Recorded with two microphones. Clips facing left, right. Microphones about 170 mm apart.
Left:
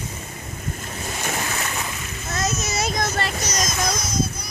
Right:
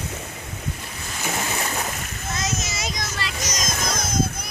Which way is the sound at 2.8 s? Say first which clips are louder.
Left 6 dB; 50° left (ahead or behind).